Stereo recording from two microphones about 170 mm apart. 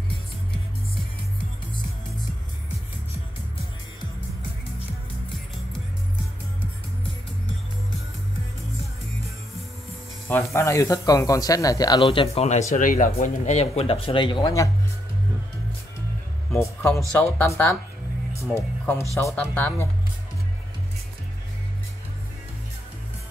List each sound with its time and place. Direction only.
10.2 s speech: 15° left (ahead or behind)
12.0 s speech: 30° left (ahead or behind)
12.7 s speech: 50° left (ahead or behind); by 14.7 s 20° left (ahead or behind)
17.2 s speech: 15° left (ahead or behind)
18.3 s music: 15° left (ahead or behind)
19.1 s speech: 10° left (ahead or behind)